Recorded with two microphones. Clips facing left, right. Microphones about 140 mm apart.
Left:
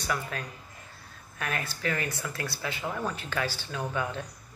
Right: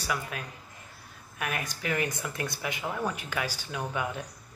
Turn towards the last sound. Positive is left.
turn(degrees=-15)  # may be behind; listen again after turning